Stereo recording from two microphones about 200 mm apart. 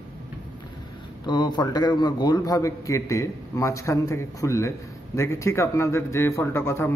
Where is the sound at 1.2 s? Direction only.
20° left (ahead or behind).